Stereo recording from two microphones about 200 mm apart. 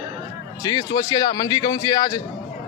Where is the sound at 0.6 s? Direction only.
20° left (ahead or behind).